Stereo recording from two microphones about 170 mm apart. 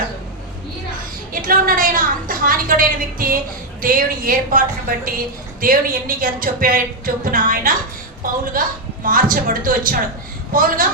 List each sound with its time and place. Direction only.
1.3 s a woman's voice: 55° right (ahead or behind)